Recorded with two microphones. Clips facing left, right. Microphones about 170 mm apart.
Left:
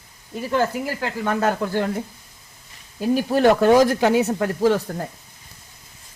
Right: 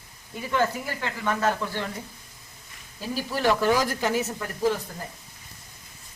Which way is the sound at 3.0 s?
55° left (ahead or behind).